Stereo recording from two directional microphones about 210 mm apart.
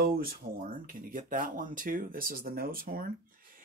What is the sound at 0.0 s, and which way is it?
Speech, 45° right (ahead or behind).